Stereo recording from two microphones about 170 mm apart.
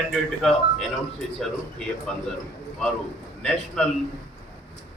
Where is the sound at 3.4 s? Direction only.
5° left (ahead or behind).